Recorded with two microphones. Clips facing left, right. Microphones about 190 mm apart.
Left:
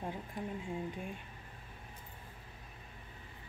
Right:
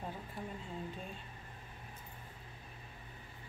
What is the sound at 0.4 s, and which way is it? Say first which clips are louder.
Speech: left 4 dB; 15° left (ahead or behind).